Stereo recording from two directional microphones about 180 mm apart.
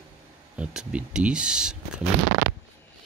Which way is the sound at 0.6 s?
5° right (ahead or behind).